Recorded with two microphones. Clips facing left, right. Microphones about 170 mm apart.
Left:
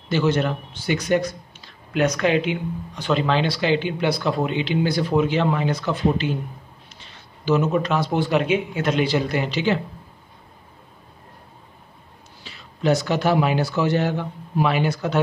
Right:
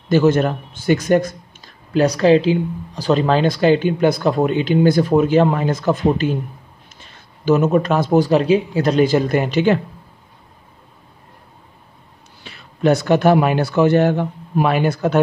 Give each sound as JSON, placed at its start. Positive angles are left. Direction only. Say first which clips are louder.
{"t": 0.1, "sound": "speech", "louder": "right 6 dB", "side_deg": -45}
{"t": 2.0, "sound": "speech", "louder": "right 6 dB", "side_deg": -35}
{"t": 12.4, "sound": "speech", "louder": "right 5 dB", "side_deg": -55}